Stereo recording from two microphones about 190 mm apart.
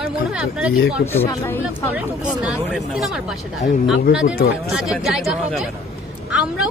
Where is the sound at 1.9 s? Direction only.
5° right (ahead or behind).